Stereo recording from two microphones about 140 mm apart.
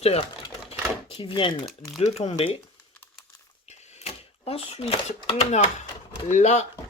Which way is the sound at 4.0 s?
50° left (ahead or behind).